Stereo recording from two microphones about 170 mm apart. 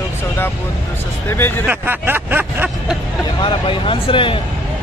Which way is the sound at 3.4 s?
30° left (ahead or behind).